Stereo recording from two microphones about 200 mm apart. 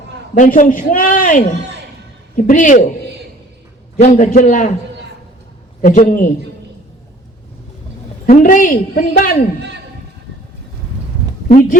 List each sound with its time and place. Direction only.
0.3 s a man's voice: 40° left (ahead or behind)
3.9 s a man's voice: 35° left (ahead or behind)
5.8 s a man's voice: 40° left (ahead or behind)
8.3 s a man's voice: 40° left (ahead or behind)
11.4 s speech: 40° left (ahead or behind)